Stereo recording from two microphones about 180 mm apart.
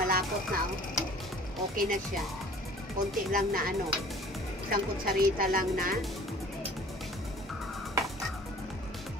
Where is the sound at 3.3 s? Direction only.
50° right (ahead or behind).